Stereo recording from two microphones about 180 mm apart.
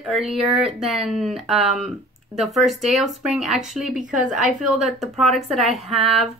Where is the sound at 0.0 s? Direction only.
Centre (ahead or behind).